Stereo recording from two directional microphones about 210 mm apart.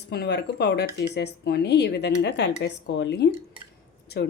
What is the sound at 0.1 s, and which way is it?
A woman's voice, 50° left (ahead or behind).